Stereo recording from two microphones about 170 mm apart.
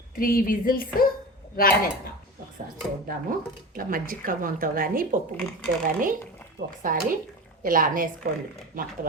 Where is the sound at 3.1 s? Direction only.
55° right (ahead or behind).